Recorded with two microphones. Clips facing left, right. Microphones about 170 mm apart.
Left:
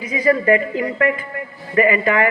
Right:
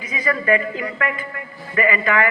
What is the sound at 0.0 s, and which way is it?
Speech, 30° left (ahead or behind).